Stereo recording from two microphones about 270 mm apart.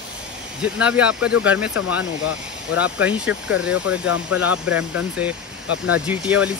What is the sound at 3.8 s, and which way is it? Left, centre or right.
Speech, left.